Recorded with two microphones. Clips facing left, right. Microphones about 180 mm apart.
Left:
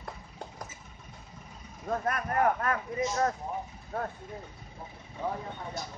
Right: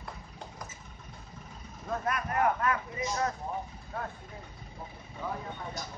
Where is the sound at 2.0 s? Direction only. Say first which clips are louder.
Left 1 dB; 45° left (ahead or behind).